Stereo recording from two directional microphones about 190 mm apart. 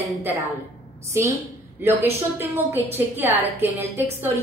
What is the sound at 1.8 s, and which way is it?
A woman's voice, 10° right (ahead or behind).